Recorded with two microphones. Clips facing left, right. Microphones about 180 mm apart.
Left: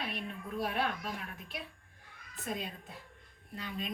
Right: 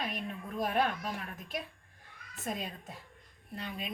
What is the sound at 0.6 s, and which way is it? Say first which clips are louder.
Speech: right 4 dB; 45° right (ahead or behind).